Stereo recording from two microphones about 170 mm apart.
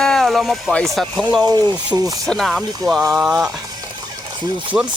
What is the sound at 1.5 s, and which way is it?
Speech, 25° right (ahead or behind).